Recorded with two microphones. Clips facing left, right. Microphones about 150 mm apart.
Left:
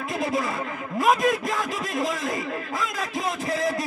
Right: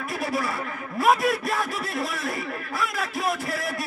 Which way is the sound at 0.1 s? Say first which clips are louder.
Left 2 dB; 20° left (ahead or behind).